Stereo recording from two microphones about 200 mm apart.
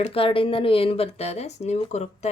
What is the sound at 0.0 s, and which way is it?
Speech, 30° left (ahead or behind).